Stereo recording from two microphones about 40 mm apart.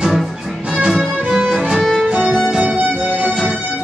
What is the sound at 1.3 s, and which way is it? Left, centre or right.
Music, centre.